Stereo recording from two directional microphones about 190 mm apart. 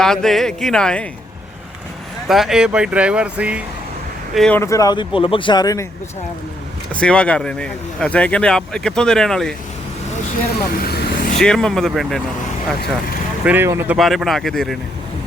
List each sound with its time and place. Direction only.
0.0 s speech: 5° left (ahead or behind)
2.2 s speech: centre (ahead or behind)
4.4 s speech: 5° left (ahead or behind)
6.9 s speech: 5° left (ahead or behind)
10.8 s vehicle: 50° left (ahead or behind)
11.3 s speech: 5° left (ahead or behind)
13.4 s speech: 10° right (ahead or behind)